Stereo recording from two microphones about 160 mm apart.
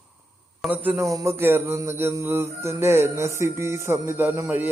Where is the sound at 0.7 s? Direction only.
10° right (ahead or behind).